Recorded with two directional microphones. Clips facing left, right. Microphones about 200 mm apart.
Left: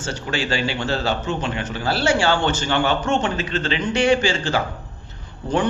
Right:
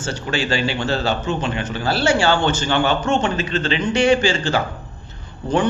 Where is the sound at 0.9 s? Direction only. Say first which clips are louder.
Right 2 dB; 20° right (ahead or behind).